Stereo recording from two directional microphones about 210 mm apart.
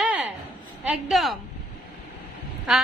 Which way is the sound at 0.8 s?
5° right (ahead or behind).